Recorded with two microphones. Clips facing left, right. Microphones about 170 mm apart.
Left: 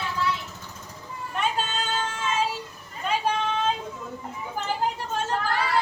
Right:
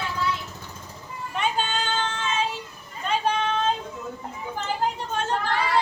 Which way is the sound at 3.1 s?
Centre (ahead or behind).